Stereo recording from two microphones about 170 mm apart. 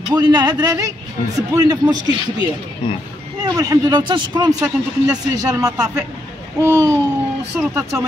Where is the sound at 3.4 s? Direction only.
20° right (ahead or behind).